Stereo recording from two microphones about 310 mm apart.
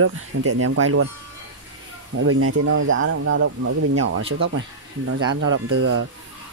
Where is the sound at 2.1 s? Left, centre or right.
Right.